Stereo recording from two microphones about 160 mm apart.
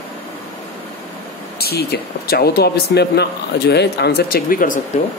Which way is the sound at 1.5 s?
80° left.